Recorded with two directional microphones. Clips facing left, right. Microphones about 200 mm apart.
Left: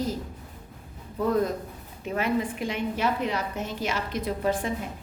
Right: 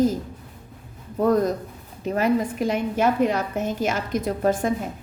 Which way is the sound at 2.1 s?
40° right (ahead or behind).